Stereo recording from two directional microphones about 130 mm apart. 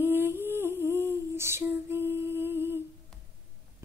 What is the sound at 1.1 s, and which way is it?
Lullaby, 20° right (ahead or behind).